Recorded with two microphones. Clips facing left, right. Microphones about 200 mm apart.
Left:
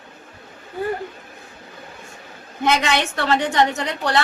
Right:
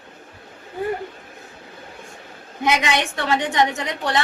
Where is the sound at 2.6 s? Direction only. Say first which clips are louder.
Left 1 dB; 15° right (ahead or behind).